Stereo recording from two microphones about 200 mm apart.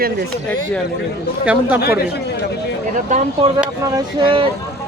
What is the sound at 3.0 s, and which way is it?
Speech, 35° right (ahead or behind).